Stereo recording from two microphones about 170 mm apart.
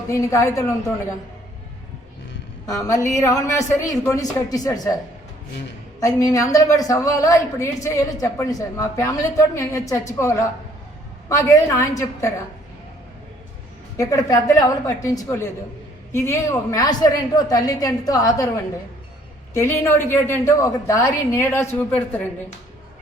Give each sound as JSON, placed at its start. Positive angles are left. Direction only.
{"t": 0.1, "sound": "a woman's voice", "side_deg": 20}
{"t": 2.7, "sound": "a woman's voice", "side_deg": 15}
{"t": 6.0, "sound": "a woman's voice", "side_deg": 20}
{"t": 13.9, "sound": "a woman's voice", "side_deg": 20}
{"t": 19.5, "sound": "a woman's voice", "side_deg": 15}